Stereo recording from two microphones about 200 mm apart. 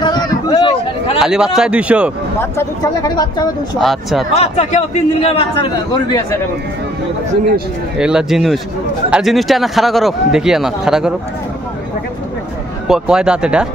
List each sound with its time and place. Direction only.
0.0 s a sound: 20° left (ahead or behind)
1.2 s a man's voice: 5° right (ahead or behind)
2.5 s speech: 20° left (ahead or behind)
3.7 s a man's voice: centre (ahead or behind)
4.3 s a man's voice: 30° left (ahead or behind)
8.0 s a man's voice: 5° right (ahead or behind)
12.8 s a man's voice: 5° right (ahead or behind)